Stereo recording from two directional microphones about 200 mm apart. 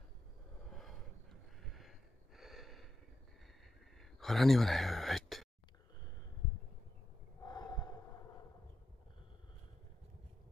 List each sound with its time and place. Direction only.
0.7 s snort: centre (ahead or behind)
4.0 s a sound: centre (ahead or behind)
7.4 s snort: 20° left (ahead or behind)